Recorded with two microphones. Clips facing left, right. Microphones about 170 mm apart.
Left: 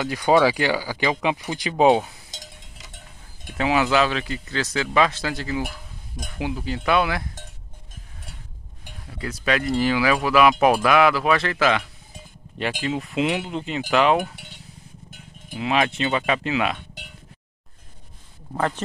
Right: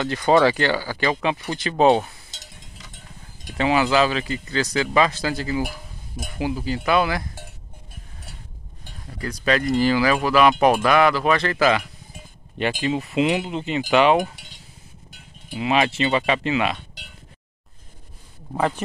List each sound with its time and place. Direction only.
0.0 s speech: 10° left (ahead or behind)
3.5 s speech: centre (ahead or behind)
9.0 s speech: 5° left (ahead or behind)
14.3 s speech: 55° left (ahead or behind)
15.5 s speech: centre (ahead or behind)
18.5 s speech: 10° right (ahead or behind)